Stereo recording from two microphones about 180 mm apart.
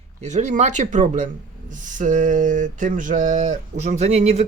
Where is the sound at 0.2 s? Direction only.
40° right (ahead or behind).